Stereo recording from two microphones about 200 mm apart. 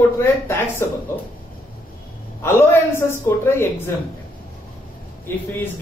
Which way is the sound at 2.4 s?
10° left (ahead or behind).